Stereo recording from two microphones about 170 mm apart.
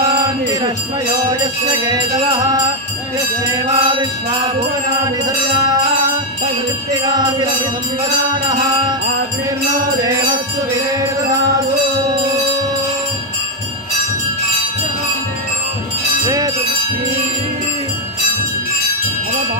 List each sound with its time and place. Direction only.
0.2 s music: 20° right (ahead or behind)
6.9 s music: 25° right (ahead or behind)
8.5 s music: 25° right (ahead or behind)